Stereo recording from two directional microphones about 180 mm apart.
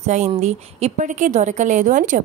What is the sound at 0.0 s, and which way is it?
A woman's voice, 40° right (ahead or behind).